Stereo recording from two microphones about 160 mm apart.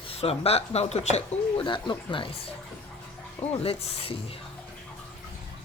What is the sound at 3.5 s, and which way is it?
Speech, 35° left (ahead or behind).